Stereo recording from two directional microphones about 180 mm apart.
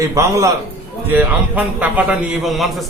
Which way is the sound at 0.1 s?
15° right (ahead or behind).